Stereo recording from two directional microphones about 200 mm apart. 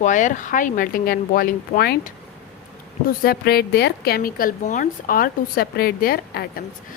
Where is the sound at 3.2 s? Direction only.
50° left (ahead or behind).